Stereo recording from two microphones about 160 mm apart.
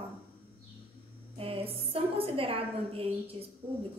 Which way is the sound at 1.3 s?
35° right (ahead or behind).